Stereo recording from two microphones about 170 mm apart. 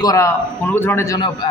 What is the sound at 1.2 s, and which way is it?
Speech, 25° left (ahead or behind).